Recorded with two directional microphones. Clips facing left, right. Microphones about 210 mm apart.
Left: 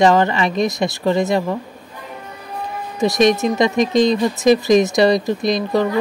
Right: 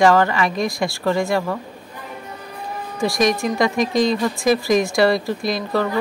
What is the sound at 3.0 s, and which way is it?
Speech, 20° left (ahead or behind).